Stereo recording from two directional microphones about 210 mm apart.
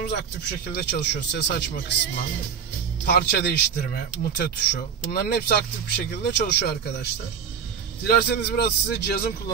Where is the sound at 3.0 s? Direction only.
50° left (ahead or behind).